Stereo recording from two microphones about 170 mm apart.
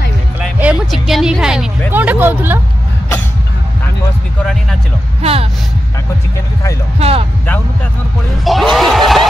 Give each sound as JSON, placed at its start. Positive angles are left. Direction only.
{"t": 0.4, "sound": "speech", "side_deg": -5}
{"t": 5.2, "sound": "speech", "side_deg": -35}
{"t": 7.0, "sound": "speech", "side_deg": -35}
{"t": 8.5, "sound": "snicker", "side_deg": 0}